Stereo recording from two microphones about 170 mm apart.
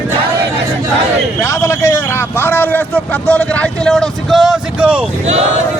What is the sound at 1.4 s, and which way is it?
A man's voice, 15° left (ahead or behind).